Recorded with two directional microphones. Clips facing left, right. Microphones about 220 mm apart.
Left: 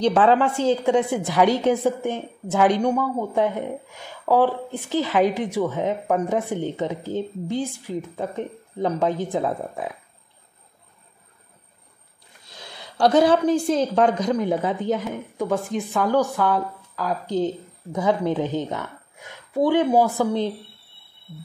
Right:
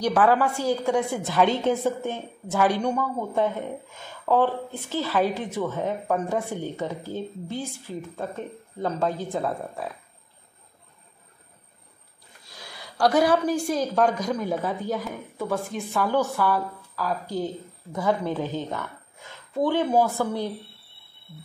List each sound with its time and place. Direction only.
0.0 s a woman's voice: 25° left (ahead or behind)
12.4 s a woman's voice: 20° left (ahead or behind)